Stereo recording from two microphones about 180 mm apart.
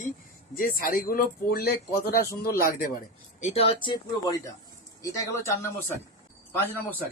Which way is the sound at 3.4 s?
30° left (ahead or behind).